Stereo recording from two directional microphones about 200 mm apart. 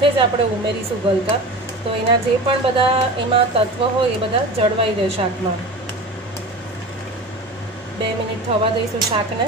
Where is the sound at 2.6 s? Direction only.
25° right (ahead or behind).